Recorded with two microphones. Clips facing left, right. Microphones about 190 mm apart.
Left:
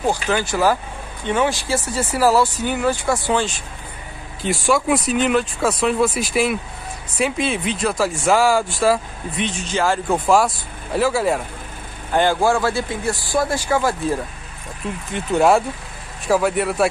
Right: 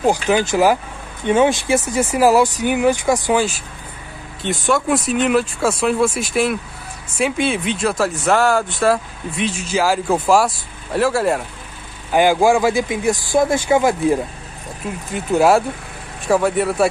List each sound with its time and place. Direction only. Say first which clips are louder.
0.0 s speech: right 4 dB; 15° right (ahead or behind)
4.4 s speech: even; centre (ahead or behind)
12.1 s speech: right 3 dB; 10° right (ahead or behind)
15.1 s speech: right 2 dB; 5° right (ahead or behind)